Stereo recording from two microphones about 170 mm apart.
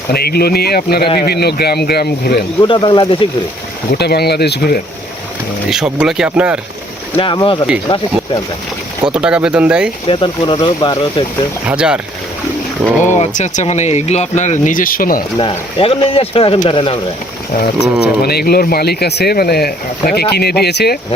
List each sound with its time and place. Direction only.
0.1 s speech: 65° left (ahead or behind)
2.6 s speech: 25° left (ahead or behind)
3.9 s speech: 70° left (ahead or behind)
5.7 s speech: 5° right (ahead or behind)
7.2 s speech: 30° left (ahead or behind)
9.0 s speech: 5° right (ahead or behind)
10.1 s speech: 30° left (ahead or behind)
11.7 s speech: 5° right (ahead or behind)
13.1 s speech: 45° left (ahead or behind)
15.4 s speech: 30° left (ahead or behind)
18.0 s speech: 70° left (ahead or behind)